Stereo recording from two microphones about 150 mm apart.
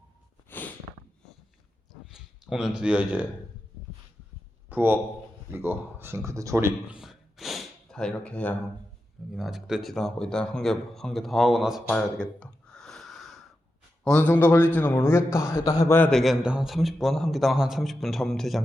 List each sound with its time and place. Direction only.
1.9 s a sound: 5° right (ahead or behind)
2.8 s speech: 5° right (ahead or behind)
4.7 s a man's voice: 15° right (ahead or behind)
6.9 s gasp: centre (ahead or behind)
9.3 s a man's voice: centre (ahead or behind); by 16.0 s 20° left (ahead or behind)
16.0 s a man's voice: centre (ahead or behind)